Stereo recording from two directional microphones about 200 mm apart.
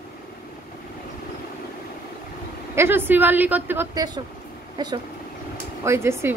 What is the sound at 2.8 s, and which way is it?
A woman's voice, 10° right (ahead or behind).